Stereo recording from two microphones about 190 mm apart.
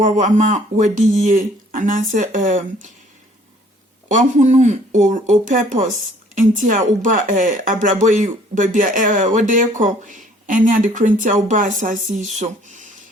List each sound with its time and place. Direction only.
0.0 s speech: 40° right (ahead or behind)
4.1 s speech: 40° right (ahead or behind)